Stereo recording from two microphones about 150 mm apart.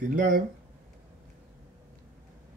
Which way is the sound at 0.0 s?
60° right (ahead or behind).